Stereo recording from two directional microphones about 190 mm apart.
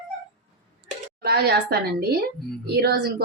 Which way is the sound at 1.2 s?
55° right (ahead or behind).